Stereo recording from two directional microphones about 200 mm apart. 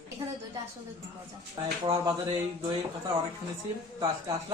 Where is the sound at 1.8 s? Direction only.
20° right (ahead or behind).